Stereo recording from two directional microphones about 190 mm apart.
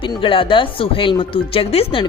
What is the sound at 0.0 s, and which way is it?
A woman's voice, 25° left (ahead or behind).